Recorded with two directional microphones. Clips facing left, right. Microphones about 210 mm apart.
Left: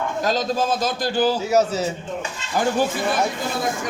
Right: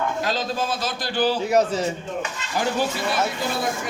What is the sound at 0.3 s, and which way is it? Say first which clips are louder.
Speech: left 4 dB; 45° left (ahead or behind).